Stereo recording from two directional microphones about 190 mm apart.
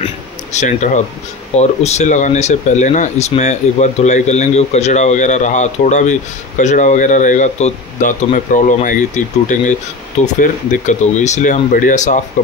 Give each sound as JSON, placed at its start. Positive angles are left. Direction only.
{"t": 0.0, "sound": "speech", "side_deg": 35}